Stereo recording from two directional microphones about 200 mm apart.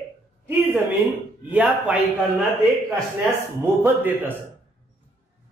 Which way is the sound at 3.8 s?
10° right (ahead or behind).